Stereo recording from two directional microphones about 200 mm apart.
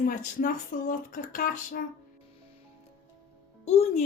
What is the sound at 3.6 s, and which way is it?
Speech, 30° left (ahead or behind).